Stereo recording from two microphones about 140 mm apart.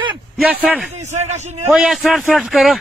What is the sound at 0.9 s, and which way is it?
Speech, 55° right (ahead or behind).